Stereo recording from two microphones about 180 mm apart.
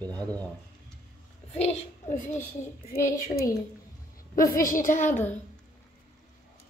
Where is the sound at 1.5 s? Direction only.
35° left (ahead or behind).